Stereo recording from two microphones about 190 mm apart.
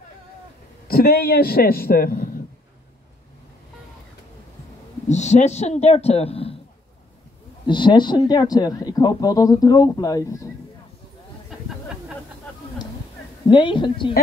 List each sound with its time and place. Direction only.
0.8 s a man's voice: 55° left (ahead or behind)
5.0 s a man's voice: 35° left (ahead or behind)
7.6 s speech: 25° left (ahead or behind)
13.5 s speech: 25° left (ahead or behind)